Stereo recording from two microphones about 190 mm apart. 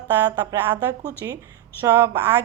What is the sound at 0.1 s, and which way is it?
A woman's voice, 10° right (ahead or behind).